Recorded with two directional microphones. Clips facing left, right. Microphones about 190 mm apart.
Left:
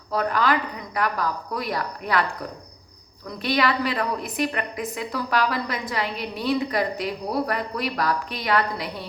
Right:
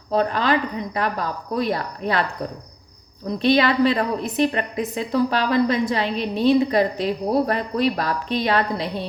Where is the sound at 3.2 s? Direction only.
25° right (ahead or behind).